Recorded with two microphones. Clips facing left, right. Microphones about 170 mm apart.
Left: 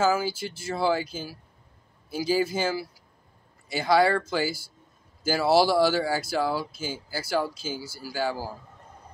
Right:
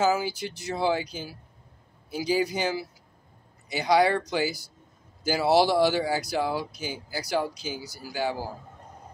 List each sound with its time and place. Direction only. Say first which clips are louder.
0.0 s speech: even; 20° right (ahead or behind)